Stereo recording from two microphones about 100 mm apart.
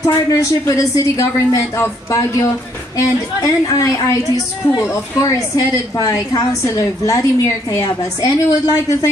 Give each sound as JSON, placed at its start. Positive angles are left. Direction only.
{"t": 0.0, "sound": "a woman's voice", "side_deg": 35}